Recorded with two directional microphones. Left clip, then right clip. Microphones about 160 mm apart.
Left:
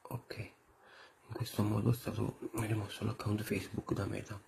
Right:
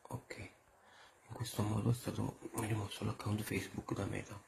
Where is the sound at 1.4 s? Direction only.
15° left (ahead or behind).